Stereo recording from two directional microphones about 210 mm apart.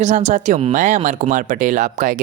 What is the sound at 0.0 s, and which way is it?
Speech, 35° right (ahead or behind).